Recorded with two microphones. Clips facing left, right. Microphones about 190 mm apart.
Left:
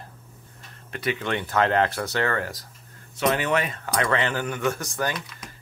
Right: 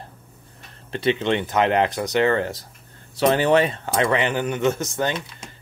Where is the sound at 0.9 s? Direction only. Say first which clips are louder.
Right 6 dB; 25° right (ahead or behind).